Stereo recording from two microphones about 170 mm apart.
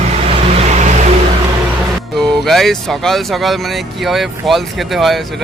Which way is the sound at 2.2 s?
Centre (ahead or behind).